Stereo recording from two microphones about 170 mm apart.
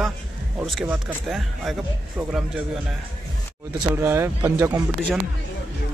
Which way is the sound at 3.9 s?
15° right (ahead or behind).